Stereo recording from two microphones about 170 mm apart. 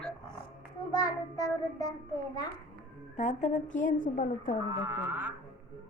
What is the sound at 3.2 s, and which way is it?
A woman's voice, 45° left (ahead or behind).